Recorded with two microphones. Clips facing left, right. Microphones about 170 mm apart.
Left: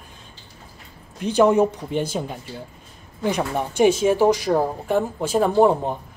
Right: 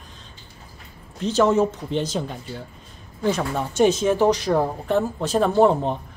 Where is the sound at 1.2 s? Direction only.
15° left (ahead or behind).